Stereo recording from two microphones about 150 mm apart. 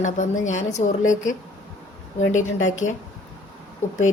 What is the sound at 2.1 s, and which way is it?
Speech, 55° left (ahead or behind).